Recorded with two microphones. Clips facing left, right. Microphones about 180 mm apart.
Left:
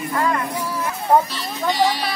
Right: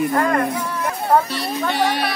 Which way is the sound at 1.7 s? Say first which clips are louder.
Left 2 dB; 60° right (ahead or behind).